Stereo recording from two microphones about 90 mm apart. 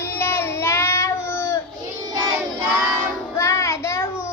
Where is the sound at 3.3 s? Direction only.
35° left (ahead or behind).